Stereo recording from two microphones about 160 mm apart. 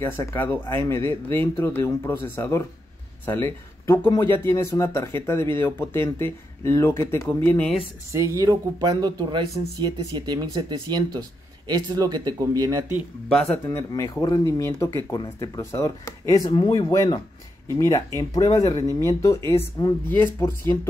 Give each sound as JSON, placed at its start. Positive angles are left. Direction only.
{"t": 0.0, "sound": "speech", "side_deg": 15}
{"t": 8.1, "sound": "speech", "side_deg": -20}
{"t": 13.7, "sound": "speech", "side_deg": 20}